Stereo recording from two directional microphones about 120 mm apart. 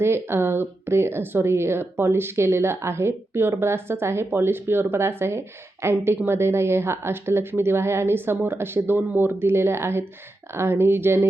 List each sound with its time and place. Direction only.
0.0 s speech: 20° right (ahead or behind)